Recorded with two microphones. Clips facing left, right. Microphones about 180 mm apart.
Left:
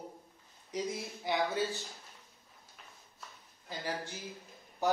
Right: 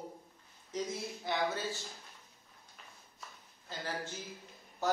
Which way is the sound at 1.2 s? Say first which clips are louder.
Left 3 dB; 15° left (ahead or behind).